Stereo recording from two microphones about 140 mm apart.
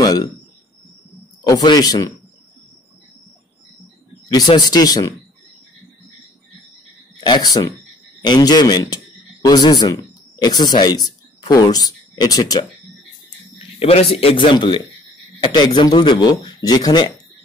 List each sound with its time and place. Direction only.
0.0 s speech: 30° left (ahead or behind)
1.4 s speech: 30° left (ahead or behind)
4.3 s speech: 30° left (ahead or behind)
7.2 s speech: 30° left (ahead or behind)
13.7 s a man's voice: 45° left (ahead or behind)